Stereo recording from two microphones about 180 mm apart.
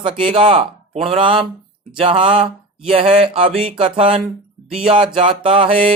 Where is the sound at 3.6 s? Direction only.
30° right (ahead or behind).